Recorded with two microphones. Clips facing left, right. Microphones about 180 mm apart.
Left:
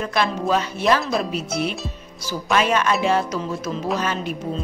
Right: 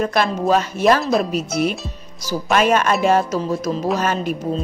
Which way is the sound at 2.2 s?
45° right (ahead or behind).